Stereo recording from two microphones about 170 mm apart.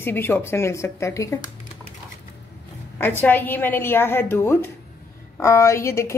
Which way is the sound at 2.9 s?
10° left (ahead or behind).